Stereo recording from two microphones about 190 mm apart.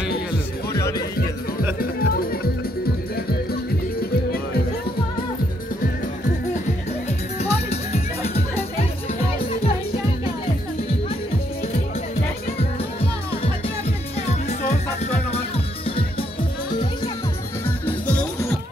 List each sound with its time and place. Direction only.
0.7 s music: 15° left (ahead or behind)
1.8 s music: 50° left (ahead or behind)
7.3 s music: 35° left (ahead or behind)
14.7 s music: 35° left (ahead or behind)
17.6 s music: 10° left (ahead or behind)